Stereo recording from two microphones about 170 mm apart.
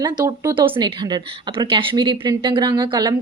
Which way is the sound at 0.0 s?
25° right (ahead or behind).